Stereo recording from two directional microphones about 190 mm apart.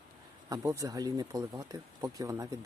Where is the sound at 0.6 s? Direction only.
15° right (ahead or behind).